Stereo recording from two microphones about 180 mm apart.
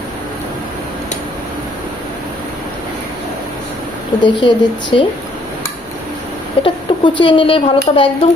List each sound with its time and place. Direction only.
4.2 s speech: 25° left (ahead or behind)
6.6 s speech: 30° left (ahead or behind)